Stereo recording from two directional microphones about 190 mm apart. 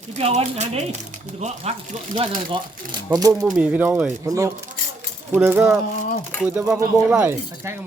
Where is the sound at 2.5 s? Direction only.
20° right (ahead or behind).